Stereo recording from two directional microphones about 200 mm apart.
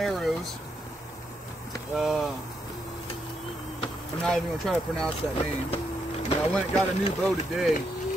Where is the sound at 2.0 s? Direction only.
Centre (ahead or behind).